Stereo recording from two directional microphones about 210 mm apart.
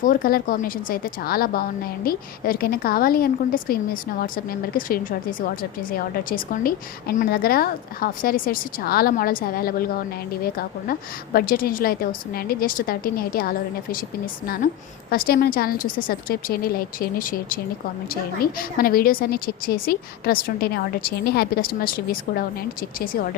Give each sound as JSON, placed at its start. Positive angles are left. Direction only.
{"t": 0.0, "sound": "a woman's voice", "side_deg": 40}